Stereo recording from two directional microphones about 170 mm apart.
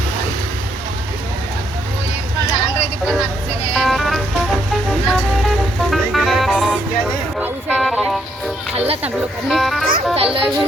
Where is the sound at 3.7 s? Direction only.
Centre (ahead or behind).